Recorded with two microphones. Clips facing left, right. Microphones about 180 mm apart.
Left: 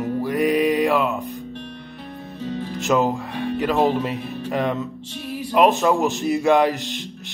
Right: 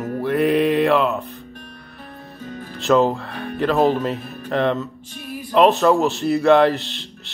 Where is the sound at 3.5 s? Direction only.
10° left (ahead or behind).